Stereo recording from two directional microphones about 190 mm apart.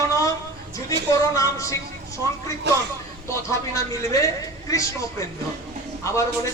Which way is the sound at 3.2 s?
15° left (ahead or behind).